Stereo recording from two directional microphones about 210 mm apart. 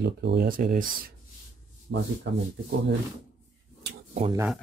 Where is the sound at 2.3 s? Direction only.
55° right (ahead or behind).